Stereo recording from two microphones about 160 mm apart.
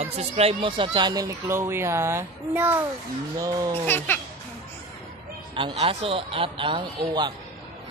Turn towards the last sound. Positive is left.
turn(degrees=-25)  # may be behind; listen again after turning